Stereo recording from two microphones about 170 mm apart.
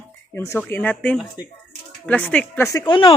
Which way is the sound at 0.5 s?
10° left (ahead or behind).